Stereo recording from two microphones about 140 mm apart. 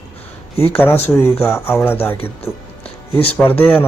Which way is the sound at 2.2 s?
45° left (ahead or behind).